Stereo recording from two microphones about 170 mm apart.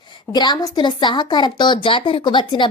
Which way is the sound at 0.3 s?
25° left (ahead or behind).